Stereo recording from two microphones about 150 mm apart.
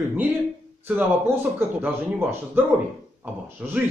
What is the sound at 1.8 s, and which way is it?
A man's voice, 15° right (ahead or behind).